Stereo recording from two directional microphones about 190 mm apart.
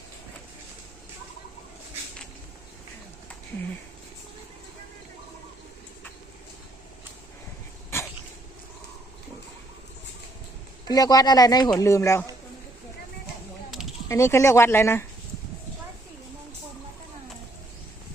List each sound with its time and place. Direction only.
7.9 s dog: 15° left (ahead or behind)
10.8 s speech: 20° left (ahead or behind)
14.1 s speech: 15° left (ahead or behind)